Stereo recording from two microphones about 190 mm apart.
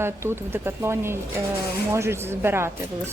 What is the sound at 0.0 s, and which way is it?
Speech, 15° right (ahead or behind).